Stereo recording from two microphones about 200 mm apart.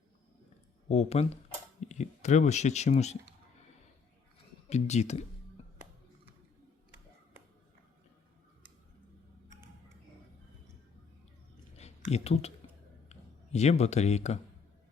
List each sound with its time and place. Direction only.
0.9 s speech: 30° left (ahead or behind)
4.7 s speech: 35° left (ahead or behind)
11.8 s a sound: 30° left (ahead or behind)
13.1 s speech: 35° left (ahead or behind)